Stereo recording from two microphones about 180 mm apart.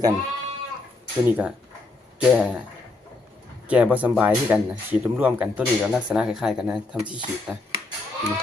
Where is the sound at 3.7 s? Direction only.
10° right (ahead or behind).